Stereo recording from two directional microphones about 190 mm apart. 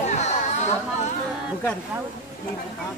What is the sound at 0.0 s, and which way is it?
Chatter, 35° left (ahead or behind).